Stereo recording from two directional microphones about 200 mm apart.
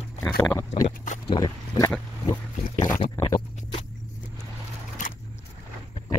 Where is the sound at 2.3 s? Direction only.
20° left (ahead or behind).